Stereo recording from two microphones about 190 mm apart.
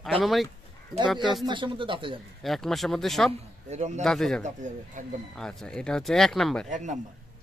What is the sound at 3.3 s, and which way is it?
Speech, 35° right (ahead or behind).